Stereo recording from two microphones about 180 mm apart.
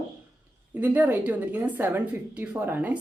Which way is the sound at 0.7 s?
10° right (ahead or behind).